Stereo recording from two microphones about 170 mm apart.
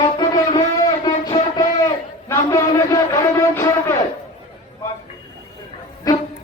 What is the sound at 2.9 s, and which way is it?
Music, 15° left (ahead or behind).